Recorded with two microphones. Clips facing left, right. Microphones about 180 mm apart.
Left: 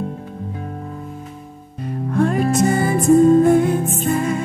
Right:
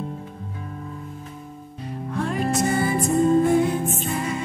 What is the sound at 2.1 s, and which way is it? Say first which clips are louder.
Music: left 7 dB; 50° left (ahead or behind).